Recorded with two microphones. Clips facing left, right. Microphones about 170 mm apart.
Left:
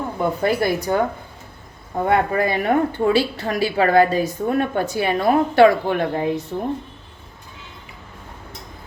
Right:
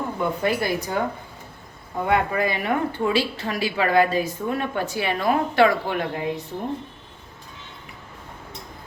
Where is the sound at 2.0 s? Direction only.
40° left (ahead or behind).